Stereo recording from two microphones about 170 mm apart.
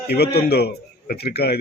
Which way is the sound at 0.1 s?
70° left (ahead or behind).